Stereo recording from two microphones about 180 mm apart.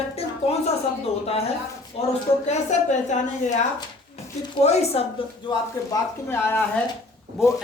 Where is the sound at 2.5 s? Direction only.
40° left (ahead or behind).